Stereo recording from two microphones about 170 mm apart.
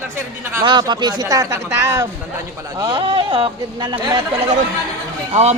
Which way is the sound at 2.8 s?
30° right (ahead or behind).